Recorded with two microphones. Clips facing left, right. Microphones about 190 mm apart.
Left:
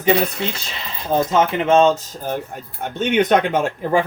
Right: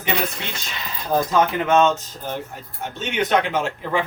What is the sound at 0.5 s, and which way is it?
Speech, 25° left (ahead or behind).